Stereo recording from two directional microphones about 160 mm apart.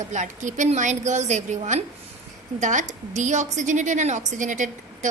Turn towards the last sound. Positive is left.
turn(degrees=-50)  # may be behind; listen again after turning